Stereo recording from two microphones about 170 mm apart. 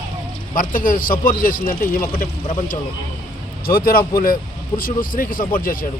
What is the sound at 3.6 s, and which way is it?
Speech, 60° left (ahead or behind).